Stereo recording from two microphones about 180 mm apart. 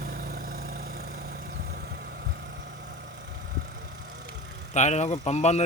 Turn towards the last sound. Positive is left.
turn(degrees=40)  # may be behind; listen again after turning